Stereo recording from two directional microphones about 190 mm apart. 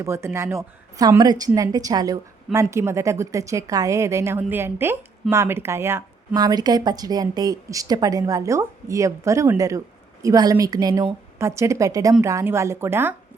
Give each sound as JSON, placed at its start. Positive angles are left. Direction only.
{"t": 0.0, "sound": "a woman's voice", "side_deg": -15}